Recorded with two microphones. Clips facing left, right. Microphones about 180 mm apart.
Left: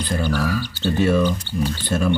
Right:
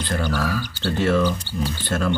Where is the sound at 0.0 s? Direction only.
15° left (ahead or behind).